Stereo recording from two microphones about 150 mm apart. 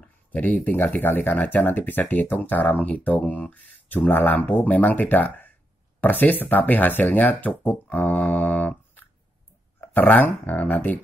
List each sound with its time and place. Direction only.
0.0 s speech: 10° left (ahead or behind)